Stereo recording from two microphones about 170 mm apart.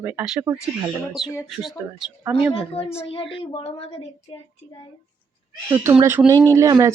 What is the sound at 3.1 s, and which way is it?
Speech, 35° left (ahead or behind).